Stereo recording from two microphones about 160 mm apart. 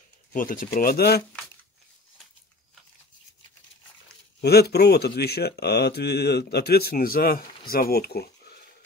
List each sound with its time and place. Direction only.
0.3 s speech: 60° left (ahead or behind); by 1.2 s 75° left (ahead or behind)
4.4 s speech: 90° left; by 8.3 s 75° left (ahead or behind)